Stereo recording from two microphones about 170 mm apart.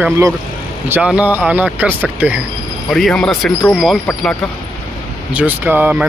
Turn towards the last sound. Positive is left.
turn(degrees=-10)  # may be behind; listen again after turning